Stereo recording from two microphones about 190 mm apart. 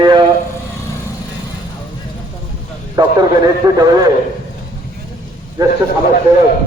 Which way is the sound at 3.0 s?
20° right (ahead or behind).